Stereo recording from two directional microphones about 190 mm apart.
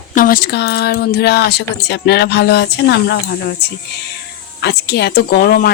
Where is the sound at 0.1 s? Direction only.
45° left (ahead or behind).